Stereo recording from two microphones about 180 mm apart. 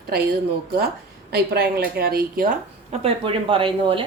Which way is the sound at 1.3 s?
60° right (ahead or behind).